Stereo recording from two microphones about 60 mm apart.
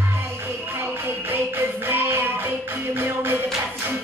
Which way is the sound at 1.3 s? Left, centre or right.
Right.